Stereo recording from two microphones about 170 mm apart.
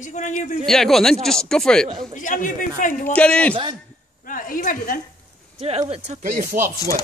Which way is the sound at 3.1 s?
5° left (ahead or behind).